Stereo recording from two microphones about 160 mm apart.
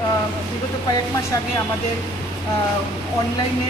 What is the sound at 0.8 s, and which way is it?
Speech, 20° left (ahead or behind).